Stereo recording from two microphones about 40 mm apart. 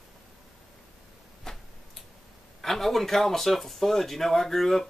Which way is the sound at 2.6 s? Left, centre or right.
Centre.